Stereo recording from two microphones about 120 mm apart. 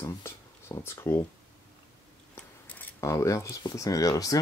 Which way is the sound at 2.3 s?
10° left (ahead or behind).